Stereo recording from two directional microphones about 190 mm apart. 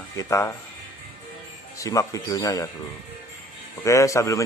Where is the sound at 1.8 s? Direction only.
15° left (ahead or behind).